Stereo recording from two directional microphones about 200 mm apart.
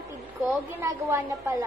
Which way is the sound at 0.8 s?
15° right (ahead or behind).